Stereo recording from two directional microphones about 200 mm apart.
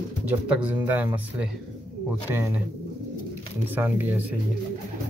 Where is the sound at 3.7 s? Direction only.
10° right (ahead or behind).